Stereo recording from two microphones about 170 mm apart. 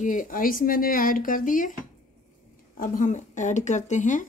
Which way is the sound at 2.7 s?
55° left (ahead or behind).